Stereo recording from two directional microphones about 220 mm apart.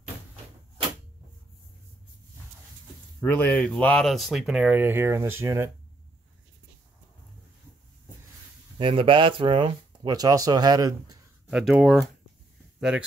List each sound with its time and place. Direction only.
3.2 s speech: 5° left (ahead or behind); by 5.7 s 10° right (ahead or behind)
8.7 s speech: 25° right (ahead or behind)
11.4 s speech: centre (ahead or behind)